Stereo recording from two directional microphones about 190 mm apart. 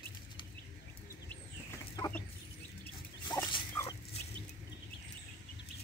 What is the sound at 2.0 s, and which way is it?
Mechanisms, 10° left (ahead or behind).